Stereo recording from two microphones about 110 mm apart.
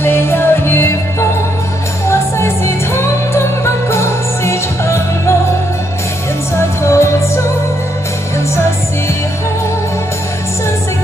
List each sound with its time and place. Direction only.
0.0 s music: 20° left (ahead or behind)
2.0 s music: 25° left (ahead or behind)
6.8 s music: 25° left (ahead or behind)